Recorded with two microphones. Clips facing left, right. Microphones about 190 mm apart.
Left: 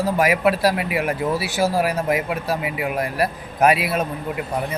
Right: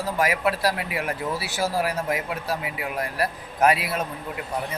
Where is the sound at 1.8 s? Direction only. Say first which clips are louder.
Left 5 dB; 15° left (ahead or behind).